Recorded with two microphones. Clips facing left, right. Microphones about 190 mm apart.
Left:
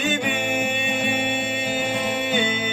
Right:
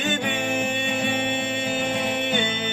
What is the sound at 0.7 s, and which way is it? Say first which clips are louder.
Music: left 1 dB; 20° left (ahead or behind).